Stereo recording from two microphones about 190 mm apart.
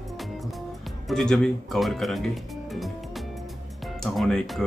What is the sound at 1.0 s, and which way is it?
Speech, 5° left (ahead or behind).